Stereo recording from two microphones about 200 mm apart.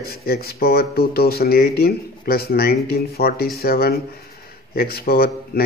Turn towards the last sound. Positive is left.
turn(degrees=50)  # may be behind; listen again after turning